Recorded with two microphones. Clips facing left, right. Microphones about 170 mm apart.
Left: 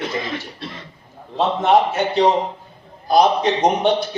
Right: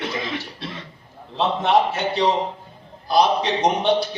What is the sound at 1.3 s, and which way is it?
A man's voice, 50° left (ahead or behind).